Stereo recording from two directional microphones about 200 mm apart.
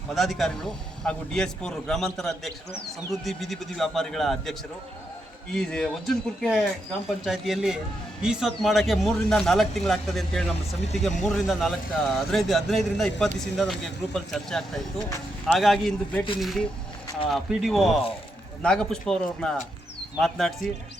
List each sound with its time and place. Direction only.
0.1 s speech: centre (ahead or behind)